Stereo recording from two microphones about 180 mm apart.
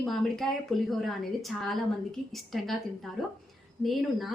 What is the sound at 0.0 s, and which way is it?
A woman's voice, centre (ahead or behind).